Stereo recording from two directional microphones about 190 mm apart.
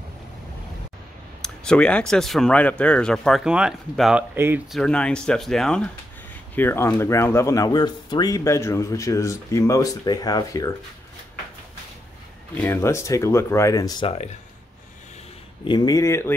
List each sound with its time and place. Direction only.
1.4 s speech: 5° left (ahead or behind); by 10.7 s 20° left (ahead or behind)
12.5 s speech: 10° left (ahead or behind); by 14.3 s 30° left (ahead or behind)
15.6 s speech: 25° left (ahead or behind)